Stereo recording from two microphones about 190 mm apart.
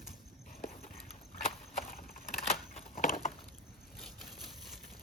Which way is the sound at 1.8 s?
45° left (ahead or behind).